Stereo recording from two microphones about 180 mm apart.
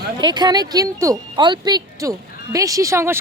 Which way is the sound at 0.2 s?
25° right (ahead or behind).